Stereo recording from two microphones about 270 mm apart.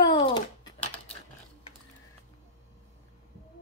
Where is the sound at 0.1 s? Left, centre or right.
Centre.